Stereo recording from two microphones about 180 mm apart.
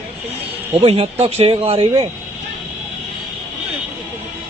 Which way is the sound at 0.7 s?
30° right (ahead or behind).